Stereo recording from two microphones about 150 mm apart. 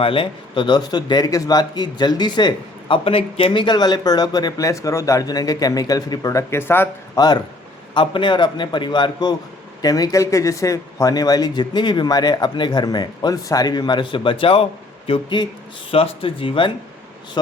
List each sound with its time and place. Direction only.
0.0 s speech: 35° left (ahead or behind); by 6.8 s 15° left (ahead or behind)
7.2 s a man's voice: 30° left (ahead or behind)